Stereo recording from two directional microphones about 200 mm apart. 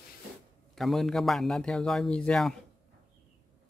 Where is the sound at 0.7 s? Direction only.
Centre (ahead or behind).